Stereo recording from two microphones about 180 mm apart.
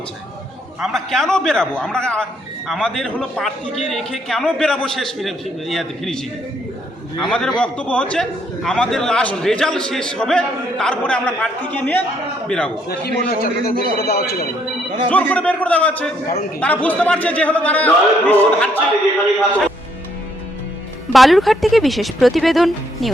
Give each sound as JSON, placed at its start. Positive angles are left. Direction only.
{"t": 0.8, "sound": "a man's voice", "side_deg": 0}
{"t": 12.9, "sound": "a man's voice", "side_deg": 60}
{"t": 15.1, "sound": "a man's voice", "side_deg": 10}
{"t": 21.1, "sound": "a man's voice", "side_deg": 0}